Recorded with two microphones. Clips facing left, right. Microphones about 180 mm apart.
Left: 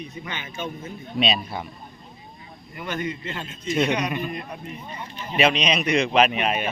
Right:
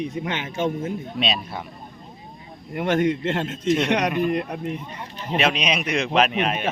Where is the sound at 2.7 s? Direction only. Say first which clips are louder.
Right 9 dB; 80° right.